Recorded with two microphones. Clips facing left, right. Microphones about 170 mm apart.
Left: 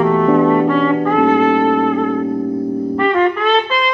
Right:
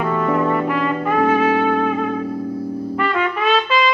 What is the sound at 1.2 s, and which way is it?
Music, 25° left (ahead or behind).